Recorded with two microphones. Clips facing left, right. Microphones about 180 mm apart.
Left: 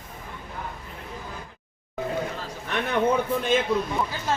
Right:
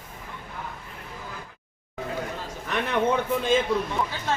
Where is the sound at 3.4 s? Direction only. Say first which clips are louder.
Even; 5° left (ahead or behind).